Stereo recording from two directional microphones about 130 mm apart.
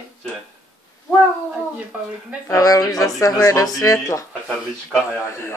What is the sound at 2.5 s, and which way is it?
Speech, 25° left (ahead or behind).